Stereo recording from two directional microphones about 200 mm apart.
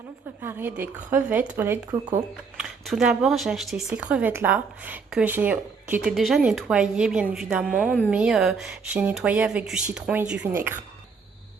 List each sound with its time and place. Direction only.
0.4 s speech: 10° right (ahead or behind)
1.9 s speech: 20° right (ahead or behind)
2.6 s speech: 5° right (ahead or behind)